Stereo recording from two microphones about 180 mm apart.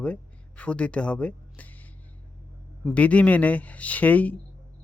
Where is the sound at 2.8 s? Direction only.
5° left (ahead or behind).